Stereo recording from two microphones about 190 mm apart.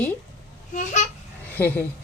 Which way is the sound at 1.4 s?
10° left (ahead or behind).